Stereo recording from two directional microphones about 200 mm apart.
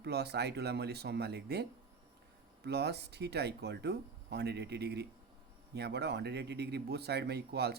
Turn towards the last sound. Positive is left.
turn(degrees=-55)  # may be behind; listen again after turning